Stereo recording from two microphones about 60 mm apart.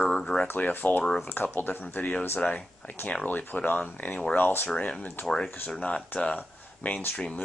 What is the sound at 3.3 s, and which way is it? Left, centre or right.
Speech, left.